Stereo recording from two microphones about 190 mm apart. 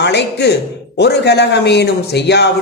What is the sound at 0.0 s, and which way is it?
Speech, 65° left (ahead or behind).